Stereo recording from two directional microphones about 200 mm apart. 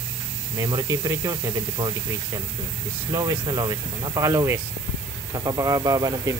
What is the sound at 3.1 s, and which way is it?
Speech, 20° right (ahead or behind).